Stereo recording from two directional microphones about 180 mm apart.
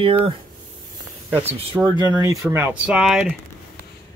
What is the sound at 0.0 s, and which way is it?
Speech, 30° right (ahead or behind).